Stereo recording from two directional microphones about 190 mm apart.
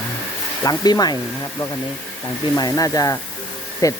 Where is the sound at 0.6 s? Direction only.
20° left (ahead or behind).